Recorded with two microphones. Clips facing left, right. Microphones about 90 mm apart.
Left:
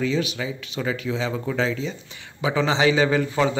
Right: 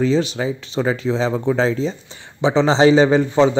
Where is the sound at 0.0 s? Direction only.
30° right (ahead or behind).